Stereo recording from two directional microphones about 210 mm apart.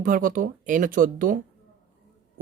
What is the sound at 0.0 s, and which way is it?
Speech, 40° right (ahead or behind).